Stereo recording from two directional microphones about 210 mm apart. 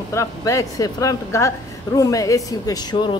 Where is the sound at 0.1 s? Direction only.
15° left (ahead or behind).